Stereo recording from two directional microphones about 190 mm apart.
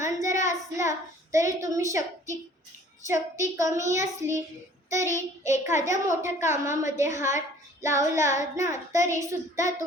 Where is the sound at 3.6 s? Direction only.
15° right (ahead or behind).